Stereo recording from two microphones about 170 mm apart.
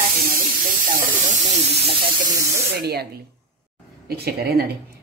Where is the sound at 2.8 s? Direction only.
70° right (ahead or behind).